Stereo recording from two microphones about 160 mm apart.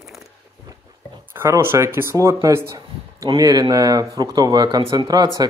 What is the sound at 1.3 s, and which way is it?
Speech, 15° right (ahead or behind).